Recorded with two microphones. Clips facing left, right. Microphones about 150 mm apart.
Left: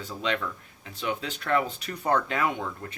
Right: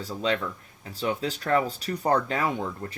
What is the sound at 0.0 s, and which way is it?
Speech, 35° right (ahead or behind).